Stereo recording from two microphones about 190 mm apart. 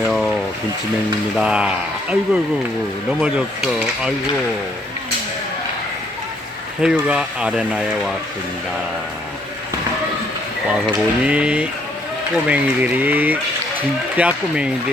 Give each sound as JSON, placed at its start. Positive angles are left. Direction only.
{"t": 0.1, "sound": "a sound", "side_deg": 0}
{"t": 1.4, "sound": "speech", "side_deg": -5}
{"t": 6.8, "sound": "speech", "side_deg": -5}
{"t": 10.8, "sound": "speech", "side_deg": -5}